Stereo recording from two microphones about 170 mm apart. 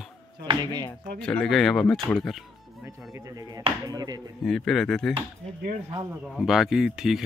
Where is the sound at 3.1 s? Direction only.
20° right (ahead or behind).